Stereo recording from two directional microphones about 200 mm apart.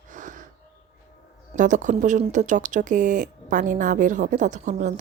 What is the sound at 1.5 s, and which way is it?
Speech, 40° right (ahead or behind).